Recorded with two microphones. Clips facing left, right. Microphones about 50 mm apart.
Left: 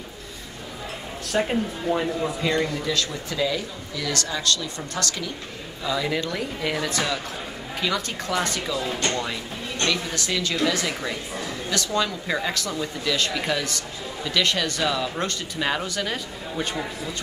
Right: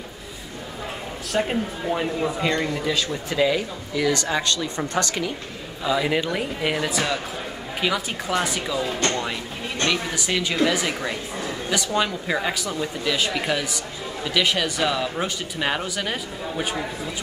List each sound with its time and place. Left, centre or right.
1.5 s a woman's voice: centre
3.3 s speech: right
6.9 s a woman's voice: centre